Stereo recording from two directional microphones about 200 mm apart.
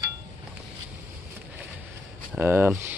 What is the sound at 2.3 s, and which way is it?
Speech, 10° right (ahead or behind).